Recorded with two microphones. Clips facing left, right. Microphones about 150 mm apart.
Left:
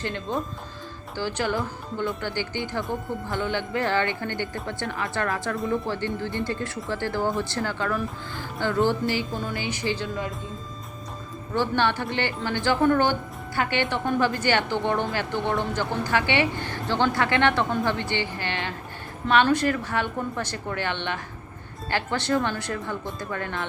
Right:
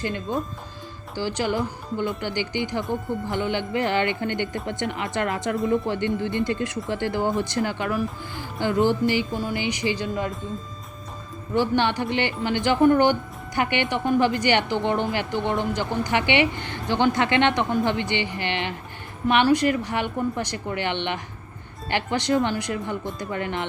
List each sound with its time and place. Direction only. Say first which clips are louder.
0.0 s a woman's voice: right 2 dB; 5° right (ahead or behind)
2.8 s speech: right 3 dB; centre (ahead or behind)
3.2 s speech: right 1 dB; 20° right (ahead or behind)
5.5 s speech: right 7 dB; centre (ahead or behind)
5.9 s a woman's voice: right 4 dB; 20° right (ahead or behind)
11.5 s a woman's voice: right 2 dB; 15° right (ahead or behind)